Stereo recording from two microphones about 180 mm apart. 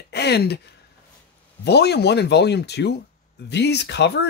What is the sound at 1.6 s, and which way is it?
Speech, 65° left (ahead or behind).